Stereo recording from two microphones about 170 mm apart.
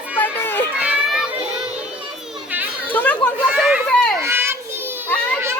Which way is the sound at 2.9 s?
10° left (ahead or behind).